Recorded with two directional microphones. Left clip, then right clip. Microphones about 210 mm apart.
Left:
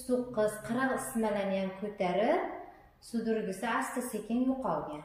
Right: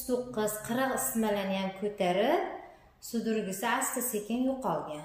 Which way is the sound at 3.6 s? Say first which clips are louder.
Right 4 dB; 55° right (ahead or behind).